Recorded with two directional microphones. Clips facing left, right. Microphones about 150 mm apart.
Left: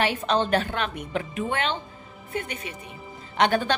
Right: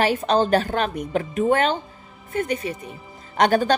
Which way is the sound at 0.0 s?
40° right (ahead or behind).